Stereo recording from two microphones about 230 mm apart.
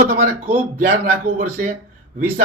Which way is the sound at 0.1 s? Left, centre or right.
Right.